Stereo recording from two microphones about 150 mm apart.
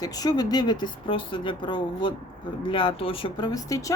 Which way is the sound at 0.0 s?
25° left (ahead or behind).